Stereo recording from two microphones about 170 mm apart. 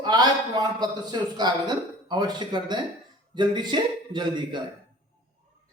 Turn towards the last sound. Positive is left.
turn(degrees=-25)  # may be behind; listen again after turning